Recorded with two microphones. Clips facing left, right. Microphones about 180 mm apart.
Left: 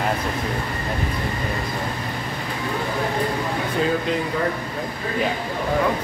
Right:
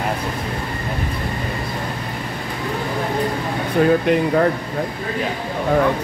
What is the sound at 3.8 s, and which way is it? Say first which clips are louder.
Speech: right 8 dB; 60° right (ahead or behind).